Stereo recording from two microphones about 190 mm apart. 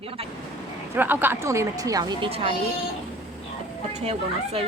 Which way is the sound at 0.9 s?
10° right (ahead or behind).